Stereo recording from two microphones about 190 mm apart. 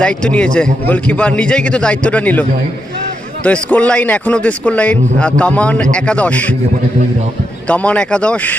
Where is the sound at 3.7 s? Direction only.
5° left (ahead or behind).